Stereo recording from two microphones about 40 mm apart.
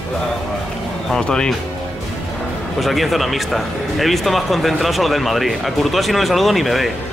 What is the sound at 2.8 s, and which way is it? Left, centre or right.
Speech, centre.